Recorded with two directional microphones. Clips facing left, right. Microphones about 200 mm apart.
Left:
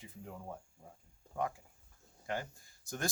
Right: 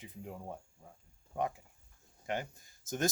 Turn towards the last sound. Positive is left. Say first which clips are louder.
# right 5 dB
turn(degrees=-20)  # may be behind; listen again after turning